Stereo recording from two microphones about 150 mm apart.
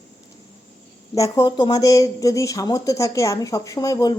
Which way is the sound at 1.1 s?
25° left (ahead or behind).